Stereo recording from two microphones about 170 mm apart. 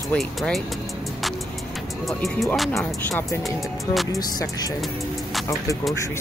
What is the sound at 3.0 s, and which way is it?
Speech, 10° left (ahead or behind).